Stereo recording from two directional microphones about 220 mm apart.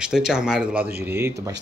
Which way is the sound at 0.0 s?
5° right (ahead or behind).